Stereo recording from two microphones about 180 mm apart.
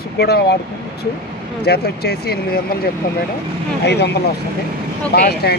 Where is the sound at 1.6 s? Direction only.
65° left (ahead or behind).